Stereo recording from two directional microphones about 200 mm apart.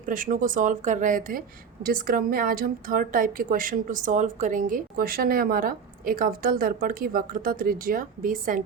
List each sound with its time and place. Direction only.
0.0 s speech: 40° right (ahead or behind)